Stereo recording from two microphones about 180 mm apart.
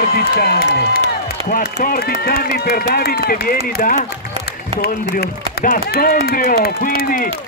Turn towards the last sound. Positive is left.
turn(degrees=55)  # may be behind; listen again after turning